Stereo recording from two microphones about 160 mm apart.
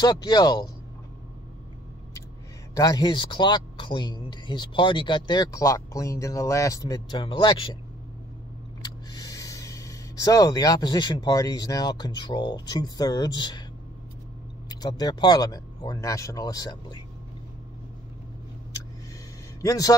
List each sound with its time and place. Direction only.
0.0 s a man's voice: 25° left (ahead or behind)
2.7 s a man's voice: 25° left (ahead or behind)
8.8 s speech: 25° left (ahead or behind)
14.7 s a man's voice: 25° left (ahead or behind)
19.6 s a man's voice: 20° left (ahead or behind)